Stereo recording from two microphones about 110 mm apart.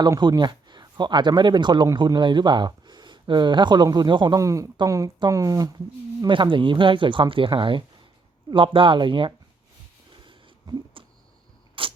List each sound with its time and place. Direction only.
0.2 s speech: 40° right (ahead or behind)
4.4 s speech: 30° right (ahead or behind)
6.2 s speech: 50° right (ahead or behind)
10.1 s a sound: 50° right (ahead or behind)